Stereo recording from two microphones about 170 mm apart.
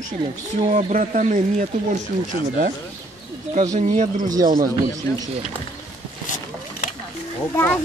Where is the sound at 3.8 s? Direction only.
45° right (ahead or behind).